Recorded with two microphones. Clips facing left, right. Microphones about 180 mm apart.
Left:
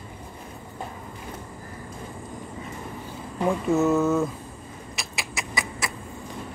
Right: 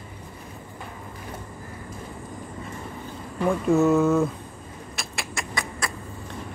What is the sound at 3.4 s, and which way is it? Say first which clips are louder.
Speech: right 2 dB; centre (ahead or behind).